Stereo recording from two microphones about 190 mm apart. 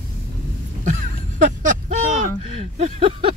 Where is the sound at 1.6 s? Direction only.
40° right (ahead or behind).